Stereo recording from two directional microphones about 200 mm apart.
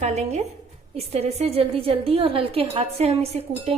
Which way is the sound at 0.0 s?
35° right (ahead or behind).